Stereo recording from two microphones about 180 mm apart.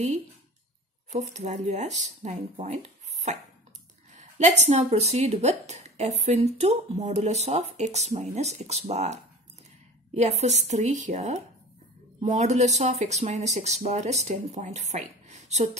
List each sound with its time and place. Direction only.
1.1 s speech: 40° right (ahead or behind)
4.1 s speech: 40° right (ahead or behind)